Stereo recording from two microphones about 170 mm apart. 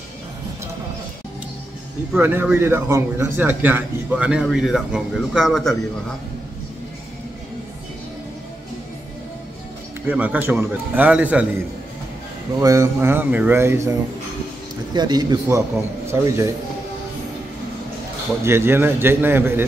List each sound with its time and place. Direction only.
2.1 s a man's voice: 10° right (ahead or behind)
10.0 s a man's voice: 10° right (ahead or behind)
12.5 s a man's voice: 15° right (ahead or behind)
15.0 s a man's voice: 25° right (ahead or behind)
18.4 s a man's voice: 15° right (ahead or behind)